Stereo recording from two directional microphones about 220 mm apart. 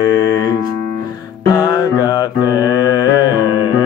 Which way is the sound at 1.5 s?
15° left (ahead or behind).